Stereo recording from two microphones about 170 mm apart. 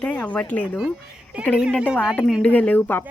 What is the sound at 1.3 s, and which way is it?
A woman's voice, 5° right (ahead or behind).